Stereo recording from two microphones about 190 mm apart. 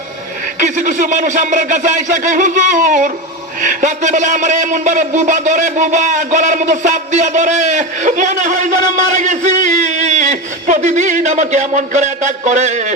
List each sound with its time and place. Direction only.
0.6 s a man's voice: 40° right (ahead or behind)